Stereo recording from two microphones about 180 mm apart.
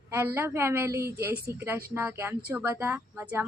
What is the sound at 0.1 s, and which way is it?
A woman's voice, 15° right (ahead or behind).